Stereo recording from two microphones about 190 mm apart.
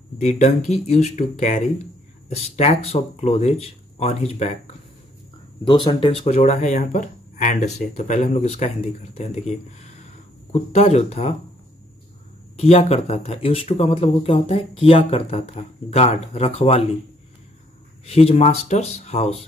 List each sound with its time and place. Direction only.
0.2 s speech: 35° left (ahead or behind)
12.5 s speech: 30° left (ahead or behind)
18.0 s speech: 30° left (ahead or behind)